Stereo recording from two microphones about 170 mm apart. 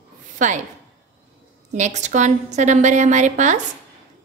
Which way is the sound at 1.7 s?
45° right (ahead or behind).